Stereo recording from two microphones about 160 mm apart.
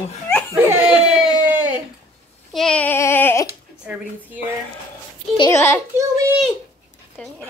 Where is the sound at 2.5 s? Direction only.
5° left (ahead or behind).